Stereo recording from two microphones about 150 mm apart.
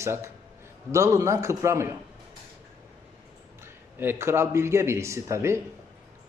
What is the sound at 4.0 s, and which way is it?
A man's voice, 15° right (ahead or behind).